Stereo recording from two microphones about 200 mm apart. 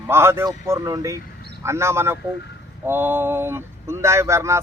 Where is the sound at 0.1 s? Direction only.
10° right (ahead or behind).